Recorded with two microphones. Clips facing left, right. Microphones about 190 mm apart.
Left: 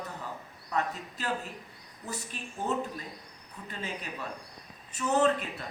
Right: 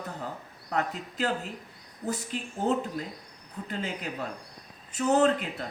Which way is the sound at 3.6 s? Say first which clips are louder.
Right 4 dB; 70° right (ahead or behind).